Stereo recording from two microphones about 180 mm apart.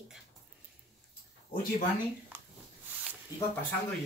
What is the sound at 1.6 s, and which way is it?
Speech, 50° left (ahead or behind).